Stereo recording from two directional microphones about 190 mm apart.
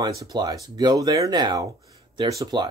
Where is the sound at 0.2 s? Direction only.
20° right (ahead or behind).